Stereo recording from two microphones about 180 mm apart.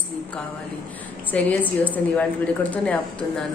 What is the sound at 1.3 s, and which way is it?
Speech, 10° left (ahead or behind).